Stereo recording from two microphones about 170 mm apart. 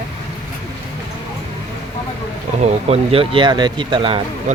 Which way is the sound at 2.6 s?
40° right (ahead or behind).